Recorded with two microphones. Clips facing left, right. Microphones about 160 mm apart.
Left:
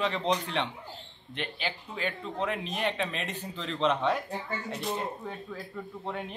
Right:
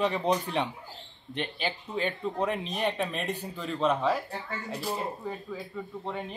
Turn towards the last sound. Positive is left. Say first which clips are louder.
# right 1 dB
turn(degrees=0)  # may be behind; listen again after turning